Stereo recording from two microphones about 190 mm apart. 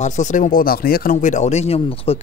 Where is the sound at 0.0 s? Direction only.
40° left (ahead or behind).